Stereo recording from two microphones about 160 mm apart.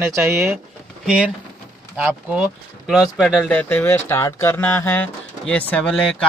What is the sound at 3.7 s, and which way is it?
Speech, 15° left (ahead or behind).